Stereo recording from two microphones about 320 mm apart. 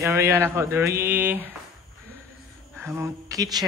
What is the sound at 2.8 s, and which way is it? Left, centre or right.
Speech, centre.